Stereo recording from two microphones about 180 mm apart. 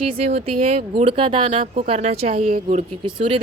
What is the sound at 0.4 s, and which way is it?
Speech, 35° right (ahead or behind).